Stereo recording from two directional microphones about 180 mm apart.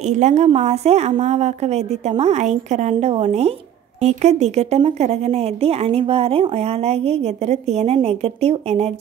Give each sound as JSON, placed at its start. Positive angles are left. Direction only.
{"t": 0.0, "sound": "a woman's voice", "side_deg": -40}